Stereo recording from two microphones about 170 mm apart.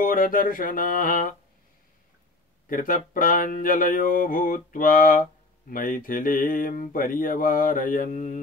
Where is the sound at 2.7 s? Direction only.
50° left (ahead or behind).